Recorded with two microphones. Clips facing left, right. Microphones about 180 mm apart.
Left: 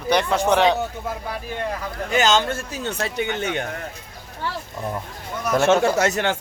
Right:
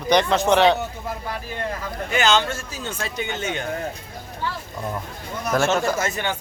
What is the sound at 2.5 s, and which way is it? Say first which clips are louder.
A man's voice: left 3 dB; 60° left (ahead or behind).